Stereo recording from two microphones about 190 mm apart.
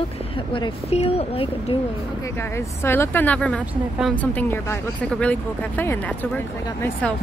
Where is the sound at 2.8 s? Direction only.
10° left (ahead or behind).